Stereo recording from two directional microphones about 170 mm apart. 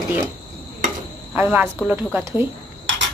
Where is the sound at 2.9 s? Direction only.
90° right.